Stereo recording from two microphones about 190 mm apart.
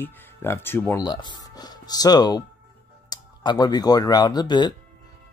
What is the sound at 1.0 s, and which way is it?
Speech, 25° left (ahead or behind).